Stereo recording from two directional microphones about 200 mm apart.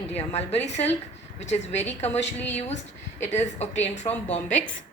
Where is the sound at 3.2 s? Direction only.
35° left (ahead or behind).